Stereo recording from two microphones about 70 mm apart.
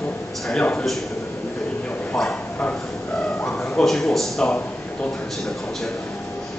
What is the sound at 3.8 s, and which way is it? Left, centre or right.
Speech, centre.